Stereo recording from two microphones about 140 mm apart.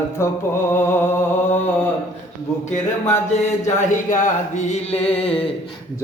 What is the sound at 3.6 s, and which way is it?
Speech, 60° left (ahead or behind).